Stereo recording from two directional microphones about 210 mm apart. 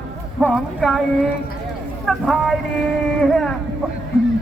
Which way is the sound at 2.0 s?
Centre (ahead or behind).